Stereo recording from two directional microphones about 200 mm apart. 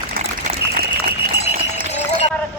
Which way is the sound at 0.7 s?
50° right (ahead or behind).